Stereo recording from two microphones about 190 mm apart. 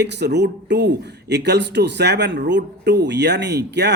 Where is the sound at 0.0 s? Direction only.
65° right (ahead or behind).